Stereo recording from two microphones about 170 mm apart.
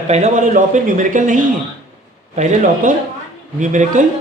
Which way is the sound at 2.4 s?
50° right (ahead or behind).